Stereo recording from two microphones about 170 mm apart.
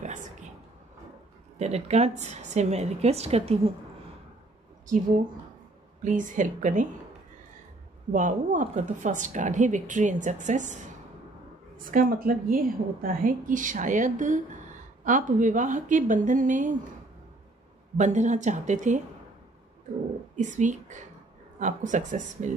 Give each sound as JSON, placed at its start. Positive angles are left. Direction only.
{"t": 0.0, "sound": "a sound", "side_deg": -45}
{"t": 1.6, "sound": "a woman's voice", "side_deg": -40}
{"t": 6.0, "sound": "a woman's voice", "side_deg": -50}
{"t": 8.1, "sound": "a woman's voice", "side_deg": -50}
{"t": 17.9, "sound": "a woman's voice", "side_deg": -45}
{"t": 20.3, "sound": "a woman's voice", "side_deg": -45}